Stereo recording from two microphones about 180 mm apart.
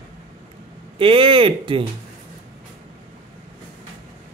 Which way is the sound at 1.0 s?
30° right (ahead or behind).